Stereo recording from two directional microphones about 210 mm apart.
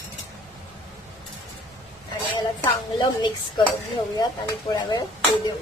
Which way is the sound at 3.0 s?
20° left (ahead or behind).